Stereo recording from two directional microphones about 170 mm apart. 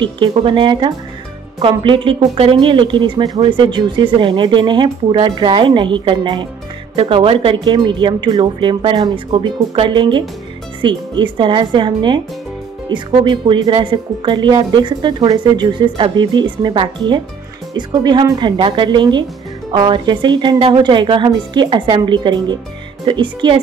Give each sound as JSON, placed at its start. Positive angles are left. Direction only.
{"t": 0.0, "sound": "speech", "side_deg": -30}